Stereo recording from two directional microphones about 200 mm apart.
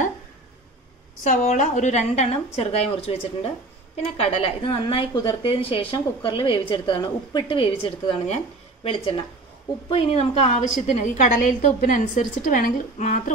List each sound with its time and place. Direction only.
1.2 s a woman's voice: 35° left (ahead or behind)